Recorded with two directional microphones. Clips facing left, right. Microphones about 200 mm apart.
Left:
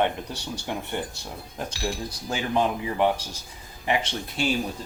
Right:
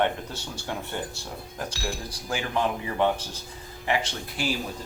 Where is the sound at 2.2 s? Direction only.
20° left (ahead or behind).